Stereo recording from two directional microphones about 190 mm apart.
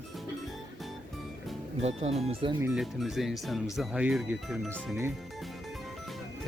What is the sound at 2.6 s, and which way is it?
Speech, centre (ahead or behind).